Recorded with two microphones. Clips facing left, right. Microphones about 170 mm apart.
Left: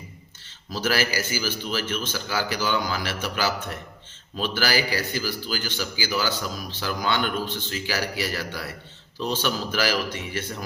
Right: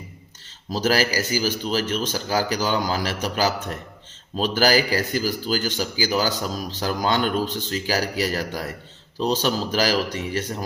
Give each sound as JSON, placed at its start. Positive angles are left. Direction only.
{"t": 0.7, "sound": "a man's voice", "side_deg": -40}